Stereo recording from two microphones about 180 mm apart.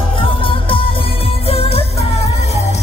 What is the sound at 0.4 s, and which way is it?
Music, 30° left (ahead or behind).